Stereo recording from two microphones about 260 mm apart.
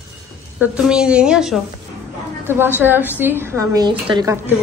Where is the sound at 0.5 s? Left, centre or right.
Centre.